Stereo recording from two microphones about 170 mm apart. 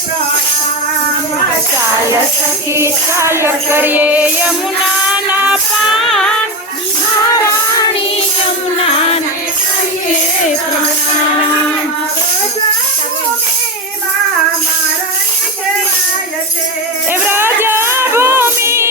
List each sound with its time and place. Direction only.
2.7 s music: 15° right (ahead or behind); by 6.3 s centre (ahead or behind)
8.8 s music: 35° left (ahead or behind)
17.1 s music: 10° right (ahead or behind)